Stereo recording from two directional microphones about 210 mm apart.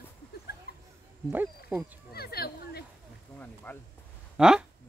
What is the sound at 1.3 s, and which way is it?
Speech, 10° right (ahead or behind).